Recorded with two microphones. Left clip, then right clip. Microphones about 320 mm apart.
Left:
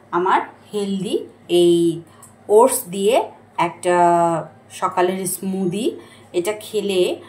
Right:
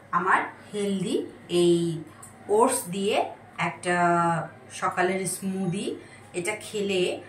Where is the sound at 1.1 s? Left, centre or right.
Centre.